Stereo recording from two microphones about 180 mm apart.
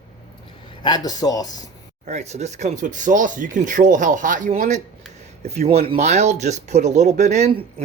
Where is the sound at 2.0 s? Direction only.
40° right (ahead or behind).